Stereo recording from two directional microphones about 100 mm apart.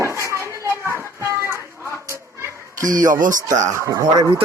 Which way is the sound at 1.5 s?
25° right (ahead or behind).